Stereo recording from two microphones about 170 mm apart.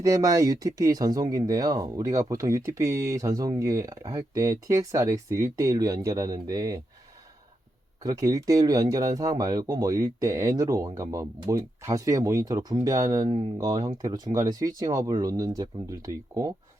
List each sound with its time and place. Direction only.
0.0 s speech: 20° right (ahead or behind)
8.0 s speech: 20° right (ahead or behind)
13.2 s speech: 35° right (ahead or behind)